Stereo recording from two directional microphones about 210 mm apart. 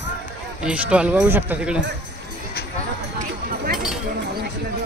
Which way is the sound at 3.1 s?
40° right (ahead or behind).